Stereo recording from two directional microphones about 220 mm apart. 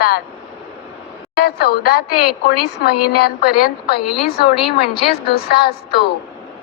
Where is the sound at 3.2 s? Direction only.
45° left (ahead or behind).